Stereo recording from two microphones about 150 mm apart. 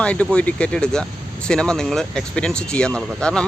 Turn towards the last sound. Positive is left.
turn(degrees=5)  # may be behind; listen again after turning